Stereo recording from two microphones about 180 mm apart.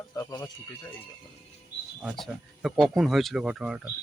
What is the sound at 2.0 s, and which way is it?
Speech, centre (ahead or behind).